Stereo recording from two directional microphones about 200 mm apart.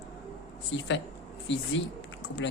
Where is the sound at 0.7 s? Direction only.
65° left (ahead or behind).